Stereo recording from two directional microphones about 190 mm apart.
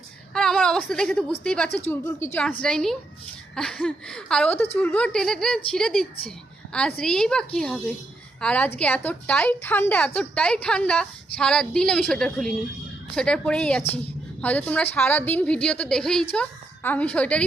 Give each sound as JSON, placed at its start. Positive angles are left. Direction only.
{"t": 0.3, "sound": "a woman's voice", "side_deg": 5}